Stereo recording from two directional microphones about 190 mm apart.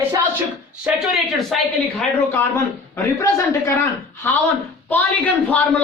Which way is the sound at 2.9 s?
15° left (ahead or behind).